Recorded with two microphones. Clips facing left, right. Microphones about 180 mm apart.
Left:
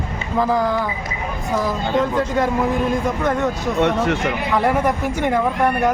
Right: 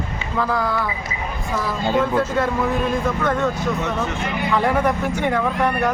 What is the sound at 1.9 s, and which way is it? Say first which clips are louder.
Speech: even; 5° right (ahead or behind).